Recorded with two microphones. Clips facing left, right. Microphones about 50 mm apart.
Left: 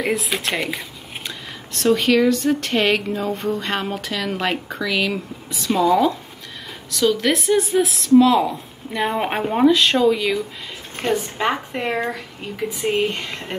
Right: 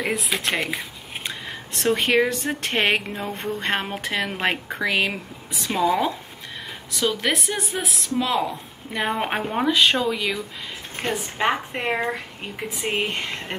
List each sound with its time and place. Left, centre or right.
0.5 s speech: centre
1.2 s speech: right
5.7 s a woman's voice: centre
9.7 s a woman's voice: centre
11.1 s speech: centre